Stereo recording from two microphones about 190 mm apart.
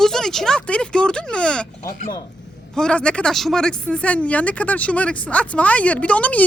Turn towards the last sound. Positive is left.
turn(degrees=5)  # may be behind; listen again after turning